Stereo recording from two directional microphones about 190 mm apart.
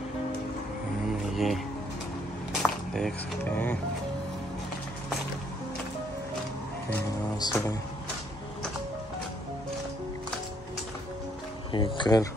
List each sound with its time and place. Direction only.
1.3 s music: centre (ahead or behind)
2.6 s a sound: 5° left (ahead or behind)
7.3 s speech: 20° left (ahead or behind)
11.7 s speech: 25° left (ahead or behind)